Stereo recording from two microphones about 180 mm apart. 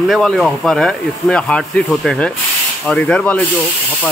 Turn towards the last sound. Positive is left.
turn(degrees=5)  # may be behind; listen again after turning